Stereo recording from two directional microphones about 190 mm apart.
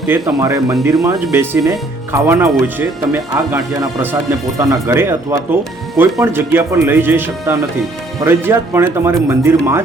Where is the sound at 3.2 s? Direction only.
15° right (ahead or behind).